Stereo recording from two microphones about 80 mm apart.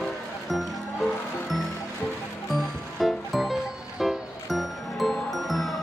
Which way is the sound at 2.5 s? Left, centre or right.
Centre.